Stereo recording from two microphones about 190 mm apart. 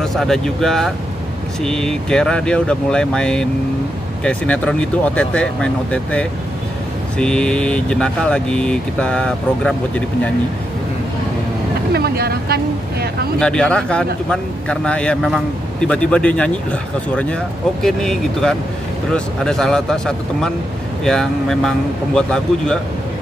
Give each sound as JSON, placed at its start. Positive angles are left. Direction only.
{"t": 0.0, "sound": "speech", "side_deg": 0}
{"t": 11.9, "sound": "speech", "side_deg": -55}
{"t": 13.4, "sound": "speech", "side_deg": 5}